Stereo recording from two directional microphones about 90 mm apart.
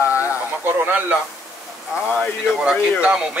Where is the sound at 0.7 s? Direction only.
20° right (ahead or behind).